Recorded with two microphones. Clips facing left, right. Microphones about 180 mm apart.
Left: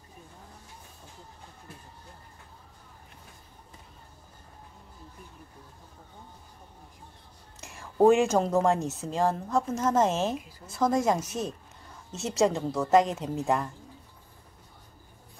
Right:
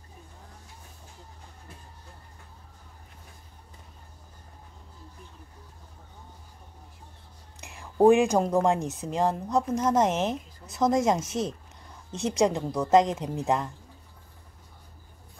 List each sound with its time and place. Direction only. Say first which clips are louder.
7.6 s whispering: right 1 dB; 15° right (ahead or behind)
8.6 s a woman's voice: even; 15° right (ahead or behind)